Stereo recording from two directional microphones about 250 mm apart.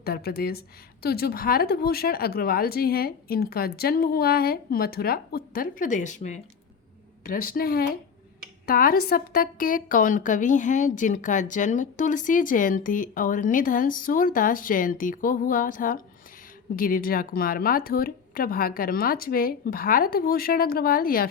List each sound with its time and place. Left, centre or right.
0.0 s a woman's voice: left